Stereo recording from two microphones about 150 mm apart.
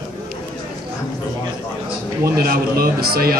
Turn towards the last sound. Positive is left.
turn(degrees=-80)